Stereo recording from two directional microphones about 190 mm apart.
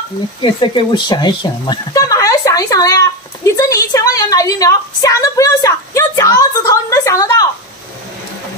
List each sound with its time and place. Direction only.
0.4 s speech: 25° left (ahead or behind)